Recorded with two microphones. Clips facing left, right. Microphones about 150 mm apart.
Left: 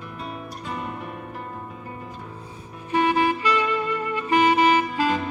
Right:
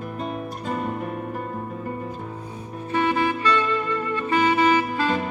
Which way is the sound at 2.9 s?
15° left (ahead or behind).